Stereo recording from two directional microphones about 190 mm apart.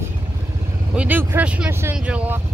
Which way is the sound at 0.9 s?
10° right (ahead or behind).